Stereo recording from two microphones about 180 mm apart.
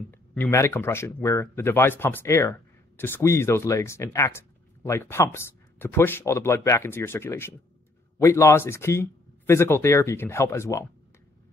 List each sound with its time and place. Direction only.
0.1 s speech: 10° left (ahead or behind)